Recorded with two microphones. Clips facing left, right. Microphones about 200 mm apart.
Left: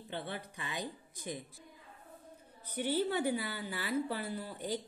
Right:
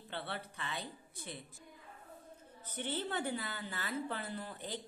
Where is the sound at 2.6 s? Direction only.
10° left (ahead or behind).